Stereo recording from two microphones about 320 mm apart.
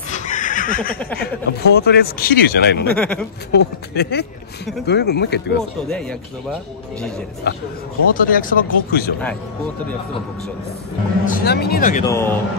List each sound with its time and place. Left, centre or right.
0.1 s neigh: left
1.6 s speech: left
2.9 s speech: centre
3.5 s speech: left
5.9 s speech: centre
7.5 s speech: left
11.2 s speech: left
12.1 s a man's voice: centre